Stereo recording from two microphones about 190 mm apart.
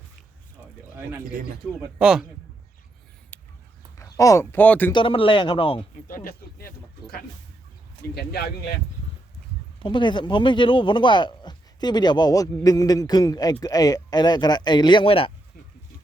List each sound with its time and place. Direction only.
2.0 s speech: 5° right (ahead or behind)
4.2 s speech: 15° left (ahead or behind)
4.9 s speech: 25° left (ahead or behind)
6.1 s speech: 50° left (ahead or behind)
9.8 s speech: 25° left (ahead or behind)